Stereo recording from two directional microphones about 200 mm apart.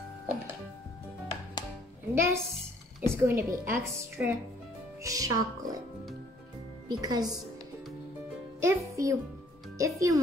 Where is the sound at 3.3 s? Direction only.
15° right (ahead or behind).